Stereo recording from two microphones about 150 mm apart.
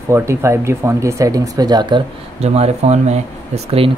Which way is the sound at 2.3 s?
45° right (ahead or behind).